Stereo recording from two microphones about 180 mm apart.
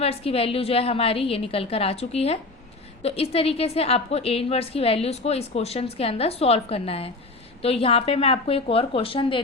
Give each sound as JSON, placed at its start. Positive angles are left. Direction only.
{"t": 0.0, "sound": "a woman's voice", "side_deg": 35}